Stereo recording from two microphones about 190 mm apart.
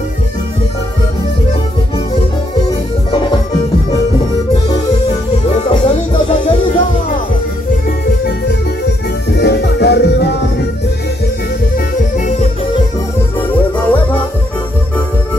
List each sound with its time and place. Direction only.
5.6 s music: 35° left (ahead or behind)
9.3 s music: 60° left (ahead or behind)